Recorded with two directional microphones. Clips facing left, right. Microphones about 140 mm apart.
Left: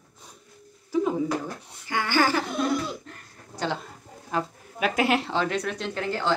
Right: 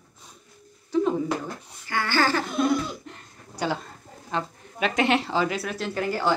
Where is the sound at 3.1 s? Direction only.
10° right (ahead or behind).